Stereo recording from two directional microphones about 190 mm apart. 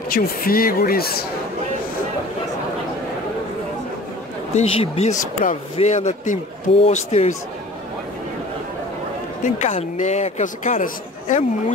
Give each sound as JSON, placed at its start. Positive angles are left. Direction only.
{"t": 0.1, "sound": "speech", "side_deg": 50}
{"t": 4.6, "sound": "a man's voice", "side_deg": 35}
{"t": 9.4, "sound": "a man's voice", "side_deg": 40}